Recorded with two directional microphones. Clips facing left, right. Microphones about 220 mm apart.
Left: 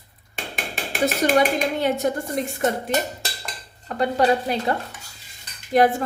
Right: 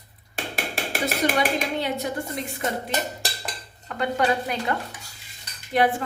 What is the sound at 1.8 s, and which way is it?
Speech, 50° left (ahead or behind).